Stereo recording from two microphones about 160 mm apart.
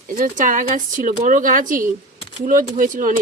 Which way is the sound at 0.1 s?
55° right (ahead or behind).